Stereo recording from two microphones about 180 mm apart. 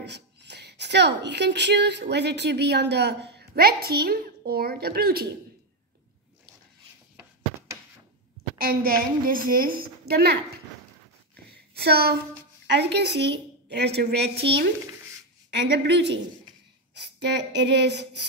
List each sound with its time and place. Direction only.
0.0 s a woman's voice: 70° right (ahead or behind)
8.5 s a woman's voice: 55° right (ahead or behind)
11.7 s a woman's voice: 60° right (ahead or behind)
15.5 s a woman's voice: 70° right (ahead or behind)